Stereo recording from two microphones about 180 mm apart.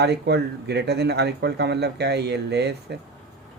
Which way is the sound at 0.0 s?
65° right (ahead or behind).